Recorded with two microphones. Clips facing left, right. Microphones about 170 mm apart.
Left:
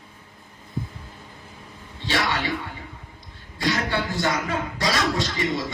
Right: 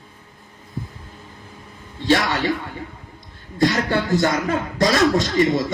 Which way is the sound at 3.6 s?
45° right (ahead or behind).